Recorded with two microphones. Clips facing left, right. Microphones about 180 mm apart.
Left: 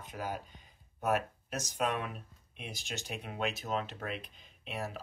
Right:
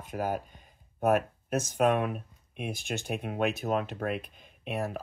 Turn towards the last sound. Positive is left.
turn(degrees=-50)  # may be behind; listen again after turning